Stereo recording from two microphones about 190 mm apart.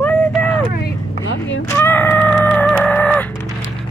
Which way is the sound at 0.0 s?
5° left (ahead or behind).